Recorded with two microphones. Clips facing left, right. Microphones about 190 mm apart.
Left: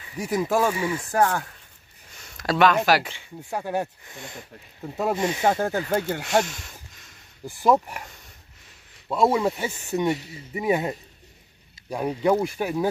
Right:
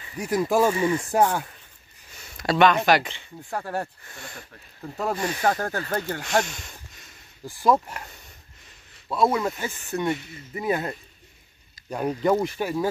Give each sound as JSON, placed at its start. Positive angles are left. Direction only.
{"t": 0.0, "sound": "speech", "side_deg": 5}
{"t": 1.1, "sound": "speech", "side_deg": -10}
{"t": 2.3, "sound": "speech", "side_deg": 0}
{"t": 7.4, "sound": "speech", "side_deg": 15}
{"t": 9.1, "sound": "speech", "side_deg": 15}